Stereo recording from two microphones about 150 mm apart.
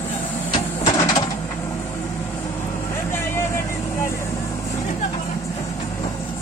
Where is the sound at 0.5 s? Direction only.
30° left (ahead or behind).